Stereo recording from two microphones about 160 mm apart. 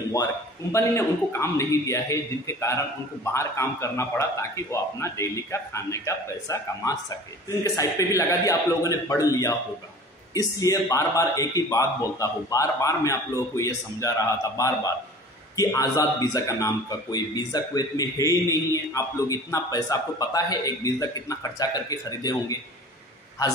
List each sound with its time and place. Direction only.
0.1 s a man's voice: 20° left (ahead or behind)